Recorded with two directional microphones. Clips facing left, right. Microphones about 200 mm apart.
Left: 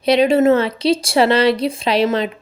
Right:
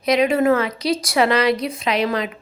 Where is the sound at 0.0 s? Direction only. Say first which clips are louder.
Left 4 dB; 30° left (ahead or behind).